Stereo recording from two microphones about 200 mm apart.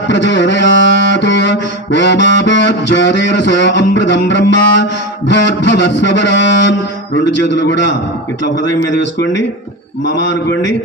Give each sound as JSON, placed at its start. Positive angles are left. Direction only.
{"t": 0.1, "sound": "music", "side_deg": 65}
{"t": 9.0, "sound": "music", "side_deg": 60}